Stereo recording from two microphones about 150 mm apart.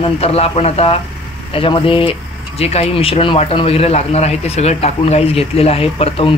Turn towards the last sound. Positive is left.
turn(degrees=40)  # may be behind; listen again after turning